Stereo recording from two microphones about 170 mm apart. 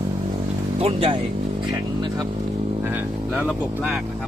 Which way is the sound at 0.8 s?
35° right (ahead or behind).